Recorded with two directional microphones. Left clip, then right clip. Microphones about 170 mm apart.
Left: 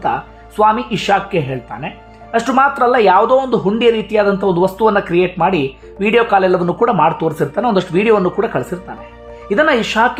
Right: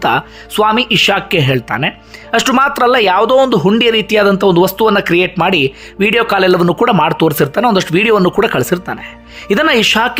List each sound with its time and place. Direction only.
0.0 s speech: 30° right (ahead or behind)
2.3 s speech: 25° right (ahead or behind)